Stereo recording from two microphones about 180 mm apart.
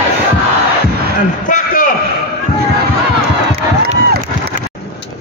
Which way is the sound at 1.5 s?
50° left (ahead or behind).